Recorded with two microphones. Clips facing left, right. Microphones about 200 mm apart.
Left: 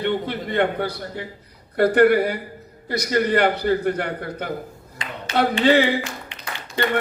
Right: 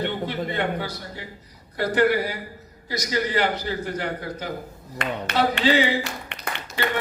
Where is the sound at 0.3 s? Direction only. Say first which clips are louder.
Left 4 dB; 55° left (ahead or behind).